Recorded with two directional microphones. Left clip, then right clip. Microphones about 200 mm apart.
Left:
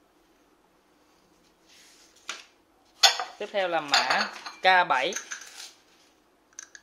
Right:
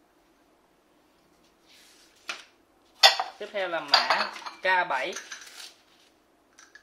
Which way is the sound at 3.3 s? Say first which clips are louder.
Left 3 dB; 40° left (ahead or behind).